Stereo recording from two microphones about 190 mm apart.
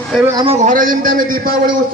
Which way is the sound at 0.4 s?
35° right (ahead or behind).